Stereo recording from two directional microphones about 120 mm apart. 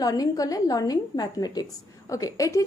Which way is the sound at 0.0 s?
30° left (ahead or behind).